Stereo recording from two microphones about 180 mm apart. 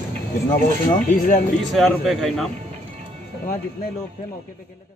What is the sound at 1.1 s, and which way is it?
Speech, 50° left (ahead or behind).